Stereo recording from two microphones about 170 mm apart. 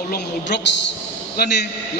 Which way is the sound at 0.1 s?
85° left.